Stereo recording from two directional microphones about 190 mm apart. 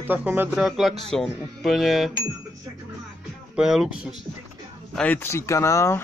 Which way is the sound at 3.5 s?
5° right (ahead or behind).